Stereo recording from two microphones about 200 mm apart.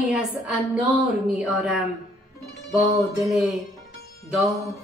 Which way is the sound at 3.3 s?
Centre (ahead or behind).